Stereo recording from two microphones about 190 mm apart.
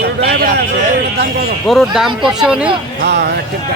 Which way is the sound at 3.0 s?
60° right (ahead or behind).